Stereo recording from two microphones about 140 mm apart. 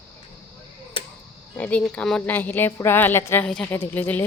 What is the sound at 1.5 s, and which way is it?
A woman's voice, 10° left (ahead or behind).